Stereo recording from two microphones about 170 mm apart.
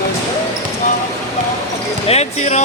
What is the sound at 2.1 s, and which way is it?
Speech, 40° left (ahead or behind).